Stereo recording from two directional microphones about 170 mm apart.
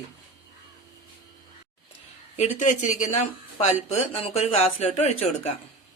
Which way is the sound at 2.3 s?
45° left (ahead or behind).